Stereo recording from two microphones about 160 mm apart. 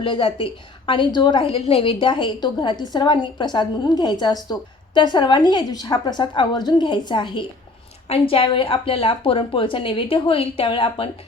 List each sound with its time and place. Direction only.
0.0 s a woman's voice: 35° left (ahead or behind)